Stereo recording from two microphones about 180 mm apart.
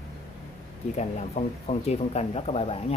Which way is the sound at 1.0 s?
35° left (ahead or behind).